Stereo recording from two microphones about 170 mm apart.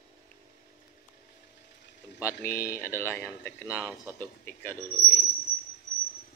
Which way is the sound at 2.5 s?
60° left (ahead or behind).